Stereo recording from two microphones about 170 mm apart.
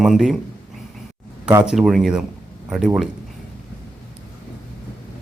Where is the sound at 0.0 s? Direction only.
Centre (ahead or behind).